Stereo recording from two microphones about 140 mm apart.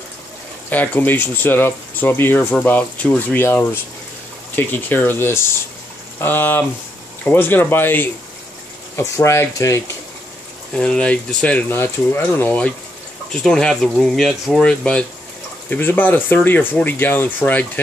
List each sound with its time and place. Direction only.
0.7 s speech: 15° left (ahead or behind)
10.7 s speech: 5° left (ahead or behind)